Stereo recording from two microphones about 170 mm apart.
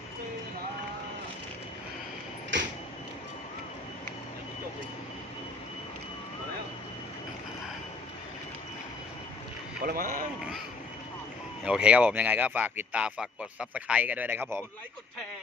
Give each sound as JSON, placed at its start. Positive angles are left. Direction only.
{"t": 2.5, "sound": "vehicle", "side_deg": -90}
{"t": 9.8, "sound": "speech", "side_deg": -55}
{"t": 11.6, "sound": "speech", "side_deg": -5}